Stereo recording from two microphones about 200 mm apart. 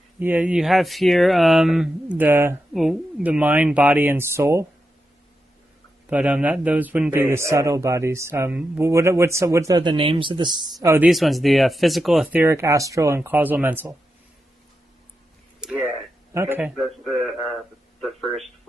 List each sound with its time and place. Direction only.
0.2 s speech: 10° right (ahead or behind)
6.0 s speech: 5° right (ahead or behind)
11.1 s speech: centre (ahead or behind)
15.6 s a sound: 10° right (ahead or behind)
16.3 s speech: 10° right (ahead or behind)